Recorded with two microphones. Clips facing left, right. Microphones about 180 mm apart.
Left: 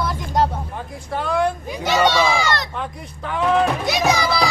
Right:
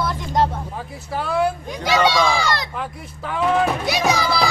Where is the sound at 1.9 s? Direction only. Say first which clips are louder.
Even; 5° left (ahead or behind).